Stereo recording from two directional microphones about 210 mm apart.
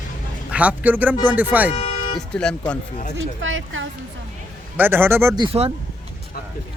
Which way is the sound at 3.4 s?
65° right (ahead or behind).